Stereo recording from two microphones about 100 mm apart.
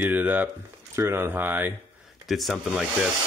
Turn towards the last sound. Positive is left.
turn(degrees=-10)  # may be behind; listen again after turning